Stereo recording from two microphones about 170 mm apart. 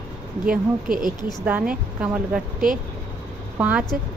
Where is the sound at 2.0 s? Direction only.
10° right (ahead or behind).